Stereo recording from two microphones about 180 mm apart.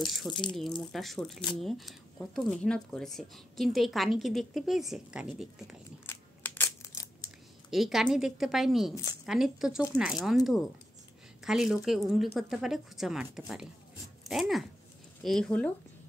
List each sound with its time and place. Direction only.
0.3 s speech: 25° left (ahead or behind)
0.6 s speech: centre (ahead or behind)
6.0 s crushing: 10° left (ahead or behind)
7.7 s speech: centre (ahead or behind)